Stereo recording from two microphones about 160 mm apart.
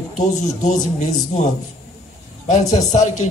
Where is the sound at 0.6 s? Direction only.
50° left (ahead or behind).